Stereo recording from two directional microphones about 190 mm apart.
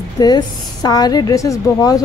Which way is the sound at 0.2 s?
20° left (ahead or behind).